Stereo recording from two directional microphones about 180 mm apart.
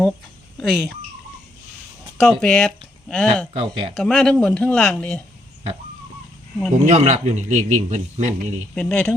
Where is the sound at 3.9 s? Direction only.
Centre (ahead or behind).